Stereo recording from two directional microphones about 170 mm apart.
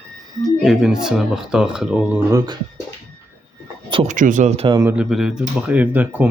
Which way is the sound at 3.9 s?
40° right (ahead or behind).